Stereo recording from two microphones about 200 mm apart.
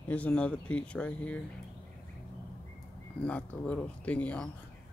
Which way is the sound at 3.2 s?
5° left (ahead or behind).